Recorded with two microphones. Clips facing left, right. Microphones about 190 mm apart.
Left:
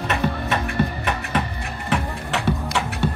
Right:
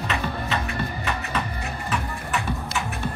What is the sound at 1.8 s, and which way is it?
Music, 85° left.